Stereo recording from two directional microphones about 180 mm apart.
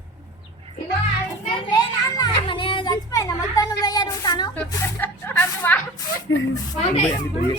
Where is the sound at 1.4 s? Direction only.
30° left (ahead or behind).